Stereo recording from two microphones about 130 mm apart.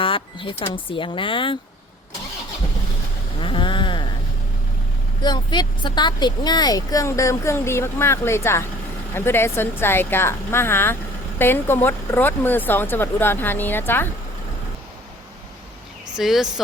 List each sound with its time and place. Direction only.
0.0 s speech: 40° left (ahead or behind)
3.4 s a sound: 40° left (ahead or behind)
5.2 s speech: 35° left (ahead or behind); by 14.1 s 15° left (ahead or behind)
16.1 s speech: 5° right (ahead or behind)